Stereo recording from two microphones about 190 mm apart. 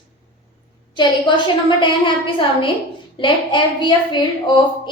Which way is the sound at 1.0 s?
25° left (ahead or behind).